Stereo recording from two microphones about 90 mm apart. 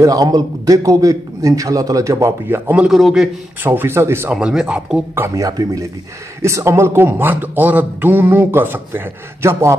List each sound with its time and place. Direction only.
0.0 s a man's voice: 40° right (ahead or behind)
2.9 s a man's voice: 5° right (ahead or behind)
3.6 s a man's voice: 25° right (ahead or behind)
4.3 s speech: 10° right (ahead or behind)
5.3 s a man's voice: 40° right (ahead or behind)